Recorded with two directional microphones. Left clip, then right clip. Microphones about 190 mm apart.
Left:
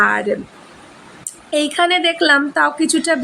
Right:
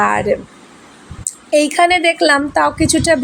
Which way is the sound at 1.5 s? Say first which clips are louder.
Right 4 dB; 15° right (ahead or behind).